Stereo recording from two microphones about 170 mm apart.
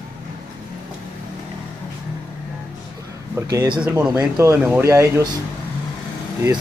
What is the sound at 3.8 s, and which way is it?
Speech, 10° right (ahead or behind).